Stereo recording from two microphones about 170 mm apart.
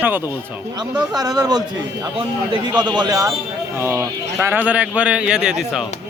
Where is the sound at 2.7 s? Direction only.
25° right (ahead or behind).